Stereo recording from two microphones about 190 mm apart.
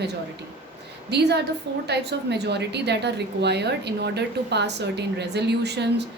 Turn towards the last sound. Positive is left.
turn(degrees=-60)  # may be behind; listen again after turning